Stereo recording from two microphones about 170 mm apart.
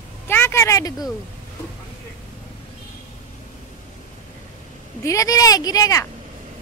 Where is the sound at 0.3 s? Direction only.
15° left (ahead or behind).